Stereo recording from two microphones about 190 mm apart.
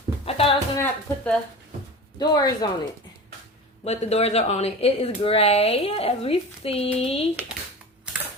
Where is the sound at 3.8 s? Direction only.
35° left (ahead or behind).